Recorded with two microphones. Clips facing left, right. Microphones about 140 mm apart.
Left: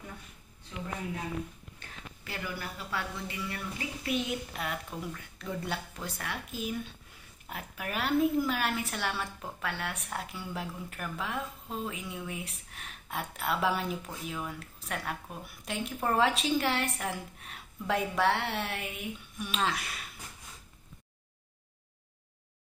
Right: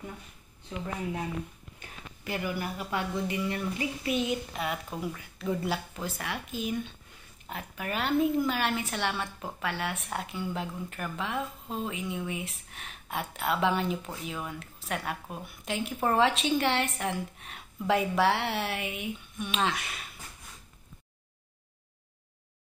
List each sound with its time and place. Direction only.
1.8 s speech: 15° right (ahead or behind)
4.0 s speech: centre (ahead or behind)